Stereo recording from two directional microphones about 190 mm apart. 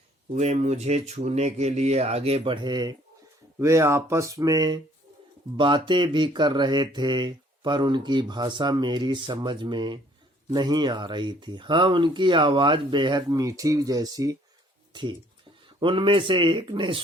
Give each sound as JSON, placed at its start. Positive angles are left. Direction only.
{"t": 0.3, "sound": "speech", "side_deg": -35}
{"t": 15.8, "sound": "speech", "side_deg": -25}